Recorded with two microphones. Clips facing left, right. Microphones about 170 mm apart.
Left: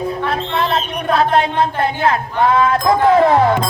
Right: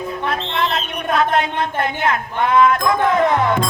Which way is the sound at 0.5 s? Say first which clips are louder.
Left 3 dB; 30° left (ahead or behind).